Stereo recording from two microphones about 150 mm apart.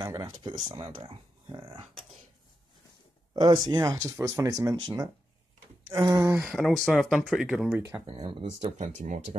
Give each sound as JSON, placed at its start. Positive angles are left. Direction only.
{"t": 0.0, "sound": "speech", "side_deg": -25}
{"t": 3.3, "sound": "speech", "side_deg": -30}
{"t": 5.9, "sound": "speech", "side_deg": -25}
{"t": 6.4, "sound": "speech", "side_deg": 0}
{"t": 8.1, "sound": "speech", "side_deg": -30}
{"t": 8.7, "sound": "speech", "side_deg": -55}